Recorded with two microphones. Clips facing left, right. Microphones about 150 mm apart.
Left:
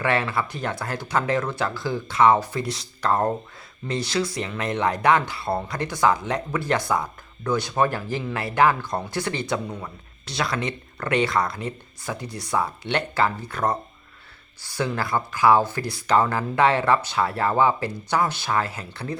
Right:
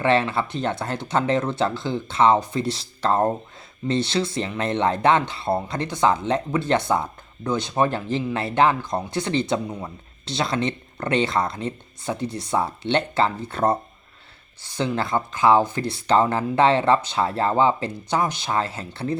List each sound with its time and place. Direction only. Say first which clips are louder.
0.0 s speech: right 3 dB; 25° right (ahead or behind)